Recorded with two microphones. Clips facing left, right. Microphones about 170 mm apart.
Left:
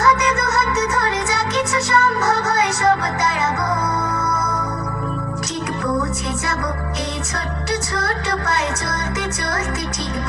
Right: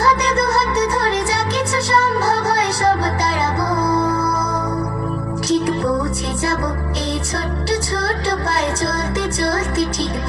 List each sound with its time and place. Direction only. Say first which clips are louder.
0.0 s music: right 1 dB; 30° right (ahead or behind)
7.7 s music: right 2 dB; 30° right (ahead or behind)